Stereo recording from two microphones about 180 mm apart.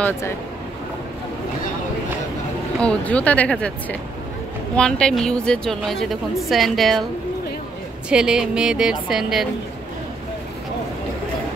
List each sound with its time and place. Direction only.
2.8 s speech: 5° left (ahead or behind)
4.7 s a woman's voice: 5° left (ahead or behind)
8.1 s a woman's voice: 5° right (ahead or behind)